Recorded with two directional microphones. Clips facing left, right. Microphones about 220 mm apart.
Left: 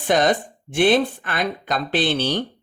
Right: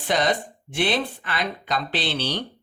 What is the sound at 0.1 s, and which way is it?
Speech, 50° left (ahead or behind).